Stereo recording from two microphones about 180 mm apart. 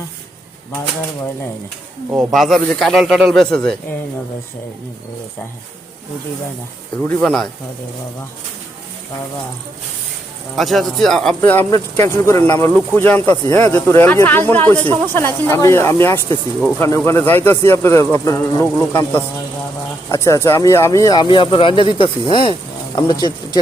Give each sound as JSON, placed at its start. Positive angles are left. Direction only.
{"t": 2.1, "sound": "speech", "side_deg": 0}
{"t": 7.1, "sound": "speech", "side_deg": 5}
{"t": 10.5, "sound": "speech", "side_deg": 0}
{"t": 11.7, "sound": "speech", "side_deg": 15}